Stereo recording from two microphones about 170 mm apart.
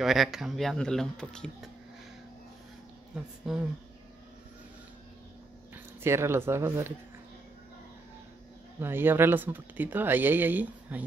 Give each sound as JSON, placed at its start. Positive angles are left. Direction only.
{"t": 0.0, "sound": "speech", "side_deg": 0}
{"t": 3.2, "sound": "speech", "side_deg": -5}
{"t": 6.0, "sound": "speech", "side_deg": -15}
{"t": 8.7, "sound": "speech", "side_deg": -15}